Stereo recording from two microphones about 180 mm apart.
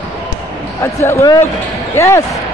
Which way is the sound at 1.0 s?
20° left (ahead or behind).